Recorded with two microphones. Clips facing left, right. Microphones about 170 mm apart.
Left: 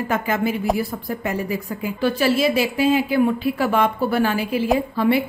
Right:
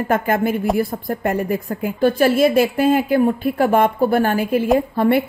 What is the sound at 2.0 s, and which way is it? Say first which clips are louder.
A woman's voice: right 4 dB; 50° right (ahead or behind).